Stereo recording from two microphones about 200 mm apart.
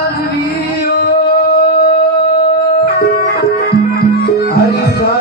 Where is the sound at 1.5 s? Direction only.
50° left (ahead or behind).